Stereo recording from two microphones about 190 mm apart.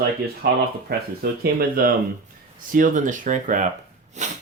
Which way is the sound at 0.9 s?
50° right (ahead or behind).